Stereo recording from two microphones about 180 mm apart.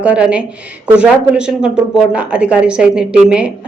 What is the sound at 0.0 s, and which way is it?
Speech, 5° right (ahead or behind).